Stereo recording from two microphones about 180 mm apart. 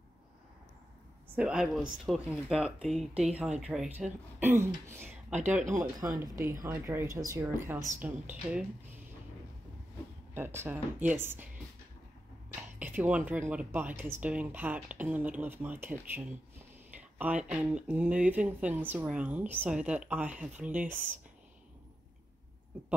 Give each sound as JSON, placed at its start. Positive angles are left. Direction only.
{"t": 1.3, "sound": "speech", "side_deg": -5}
{"t": 10.3, "sound": "speech", "side_deg": -15}
{"t": 12.7, "sound": "speech", "side_deg": -10}